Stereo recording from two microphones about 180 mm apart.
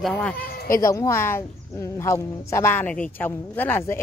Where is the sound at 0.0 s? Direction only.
5° left (ahead or behind).